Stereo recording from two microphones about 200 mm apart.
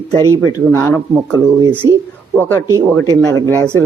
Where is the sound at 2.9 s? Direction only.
15° left (ahead or behind).